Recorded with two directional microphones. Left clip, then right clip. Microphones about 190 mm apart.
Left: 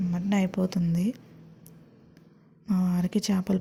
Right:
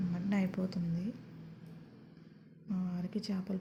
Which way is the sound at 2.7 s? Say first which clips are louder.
Left 12 dB; 45° left (ahead or behind).